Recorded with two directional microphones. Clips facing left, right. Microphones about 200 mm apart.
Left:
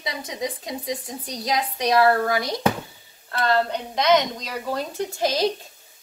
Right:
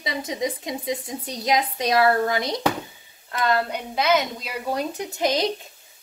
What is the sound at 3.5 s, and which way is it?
A woman's voice, 10° right (ahead or behind).